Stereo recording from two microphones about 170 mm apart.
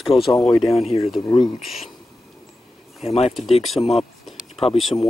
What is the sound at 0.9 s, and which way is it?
Speech, 25° left (ahead or behind).